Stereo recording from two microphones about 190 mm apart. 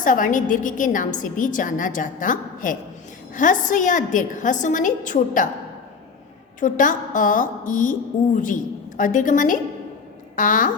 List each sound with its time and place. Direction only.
0.0 s a woman's voice: 45° left (ahead or behind)
6.6 s a woman's voice: 45° left (ahead or behind)